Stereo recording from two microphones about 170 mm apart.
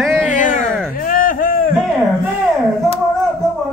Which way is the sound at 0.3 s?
50° left (ahead or behind).